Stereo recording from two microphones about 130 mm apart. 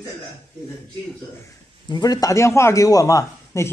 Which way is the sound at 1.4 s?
30° left (ahead or behind).